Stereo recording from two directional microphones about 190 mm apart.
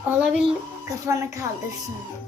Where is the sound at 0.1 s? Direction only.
5° right (ahead or behind).